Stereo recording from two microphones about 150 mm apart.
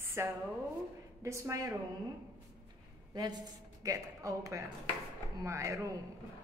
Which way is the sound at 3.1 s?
25° right (ahead or behind).